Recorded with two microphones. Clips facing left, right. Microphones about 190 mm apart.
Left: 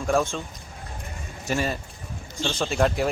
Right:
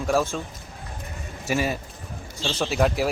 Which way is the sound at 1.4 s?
5° right (ahead or behind).